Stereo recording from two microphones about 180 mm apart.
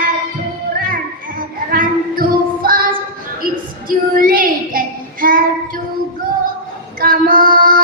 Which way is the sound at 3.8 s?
50° right (ahead or behind).